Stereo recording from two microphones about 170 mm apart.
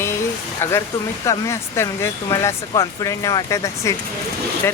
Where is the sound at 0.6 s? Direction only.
15° left (ahead or behind).